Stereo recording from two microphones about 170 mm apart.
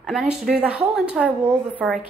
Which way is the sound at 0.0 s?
Centre (ahead or behind).